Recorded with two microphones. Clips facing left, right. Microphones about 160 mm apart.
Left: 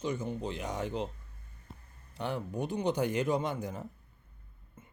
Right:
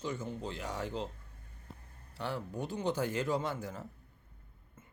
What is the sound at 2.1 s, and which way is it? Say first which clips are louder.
Speech: left 3 dB; 20° left (ahead or behind).